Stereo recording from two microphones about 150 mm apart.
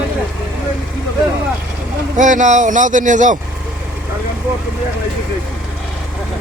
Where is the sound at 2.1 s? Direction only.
55° right (ahead or behind).